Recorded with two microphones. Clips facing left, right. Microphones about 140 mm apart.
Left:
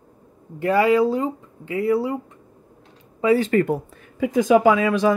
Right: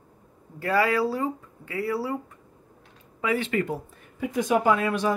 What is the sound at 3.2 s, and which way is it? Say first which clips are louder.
Speech: left 8 dB; 35° left (ahead or behind).